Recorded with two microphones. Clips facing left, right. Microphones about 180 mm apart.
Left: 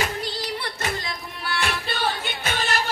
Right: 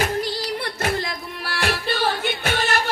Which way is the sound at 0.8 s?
60° right (ahead or behind).